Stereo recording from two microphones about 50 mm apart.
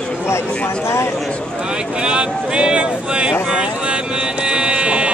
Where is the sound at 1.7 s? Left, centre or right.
Centre.